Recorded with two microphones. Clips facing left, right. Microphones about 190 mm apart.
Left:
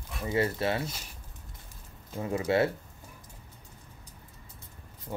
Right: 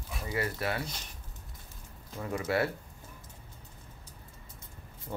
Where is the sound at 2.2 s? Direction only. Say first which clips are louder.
Left 4 dB; 25° left (ahead or behind).